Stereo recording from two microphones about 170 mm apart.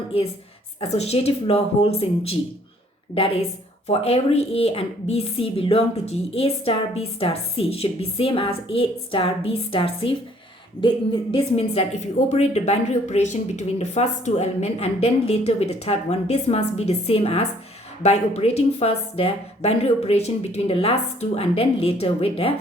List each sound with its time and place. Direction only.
0.8 s speech: 40° left (ahead or behind)
3.8 s speech: 35° left (ahead or behind)